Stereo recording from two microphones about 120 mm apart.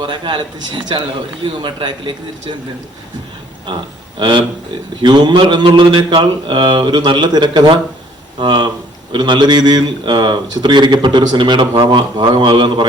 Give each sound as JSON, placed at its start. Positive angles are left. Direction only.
{"t": 0.0, "sound": "speech", "side_deg": -40}
{"t": 4.2, "sound": "speech", "side_deg": -40}